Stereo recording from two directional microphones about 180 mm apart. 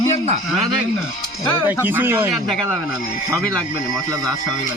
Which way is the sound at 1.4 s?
10° right (ahead or behind).